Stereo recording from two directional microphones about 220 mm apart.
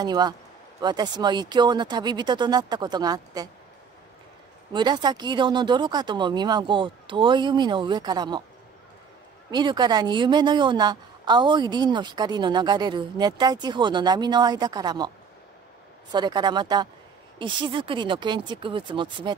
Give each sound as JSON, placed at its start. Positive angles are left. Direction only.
{"t": 0.0, "sound": "a woman's voice", "side_deg": -20}
{"t": 4.7, "sound": "a woman's voice", "side_deg": -20}
{"t": 9.5, "sound": "a woman's voice", "side_deg": -20}
{"t": 16.1, "sound": "a woman's voice", "side_deg": -20}